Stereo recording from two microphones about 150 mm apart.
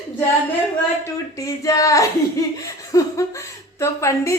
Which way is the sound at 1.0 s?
20° left (ahead or behind).